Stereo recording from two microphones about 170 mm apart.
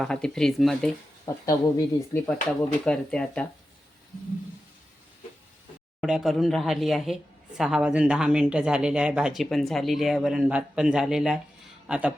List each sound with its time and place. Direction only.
0.0 s speech: 5° left (ahead or behind)
1.3 s speech: 15° left (ahead or behind)
2.1 s speech: 5° left (ahead or behind)
6.0 s speech: centre (ahead or behind)